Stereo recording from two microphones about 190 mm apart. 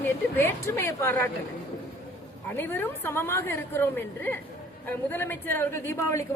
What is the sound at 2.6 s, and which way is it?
A woman's voice, 10° left (ahead or behind).